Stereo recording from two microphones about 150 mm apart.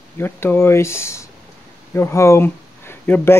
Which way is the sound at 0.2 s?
15° left (ahead or behind).